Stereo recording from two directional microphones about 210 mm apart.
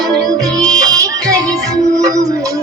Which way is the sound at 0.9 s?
15° right (ahead or behind).